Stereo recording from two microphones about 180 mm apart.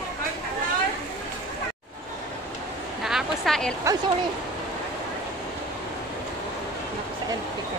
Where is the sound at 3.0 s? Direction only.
Centre (ahead or behind).